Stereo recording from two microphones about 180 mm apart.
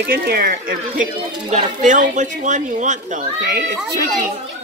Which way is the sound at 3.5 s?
60° right (ahead or behind).